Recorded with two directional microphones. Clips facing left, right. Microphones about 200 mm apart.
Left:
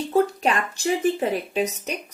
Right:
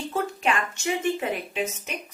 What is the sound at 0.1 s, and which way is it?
A woman's voice, 35° left (ahead or behind).